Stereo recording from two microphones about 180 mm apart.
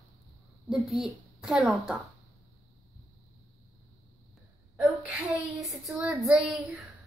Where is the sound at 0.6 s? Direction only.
Centre (ahead or behind).